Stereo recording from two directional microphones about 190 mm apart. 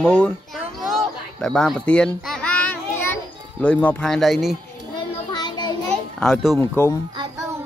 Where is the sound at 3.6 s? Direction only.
5° left (ahead or behind).